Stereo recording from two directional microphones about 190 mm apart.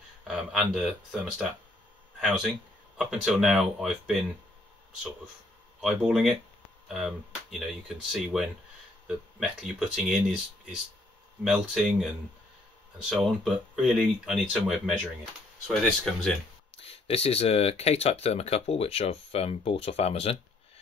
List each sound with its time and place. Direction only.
0.3 s speech: 5° right (ahead or behind)
5.8 s speech: 5° right (ahead or behind)
13.1 s speech: centre (ahead or behind)
16.7 s speech: 30° left (ahead or behind)